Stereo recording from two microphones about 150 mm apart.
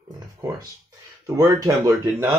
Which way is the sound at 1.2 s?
20° right (ahead or behind).